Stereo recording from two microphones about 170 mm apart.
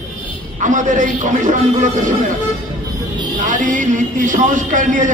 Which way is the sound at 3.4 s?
50° right (ahead or behind).